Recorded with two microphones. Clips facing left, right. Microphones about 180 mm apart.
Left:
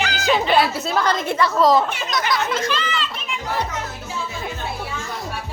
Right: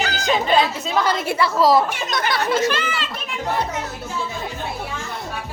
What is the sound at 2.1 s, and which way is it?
Speech, 55° right (ahead or behind).